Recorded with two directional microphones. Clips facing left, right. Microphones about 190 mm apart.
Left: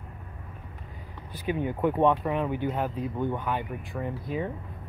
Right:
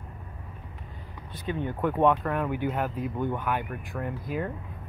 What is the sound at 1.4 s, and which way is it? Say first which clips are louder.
Speech: left 2 dB; 10° left (ahead or behind).